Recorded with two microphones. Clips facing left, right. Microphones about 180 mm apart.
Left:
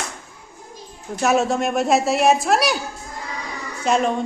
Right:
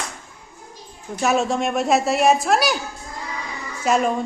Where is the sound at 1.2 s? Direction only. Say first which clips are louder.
Left 1 dB; centre (ahead or behind).